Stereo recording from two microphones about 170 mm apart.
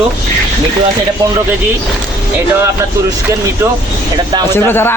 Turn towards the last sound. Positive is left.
turn(degrees=10)  # may be behind; listen again after turning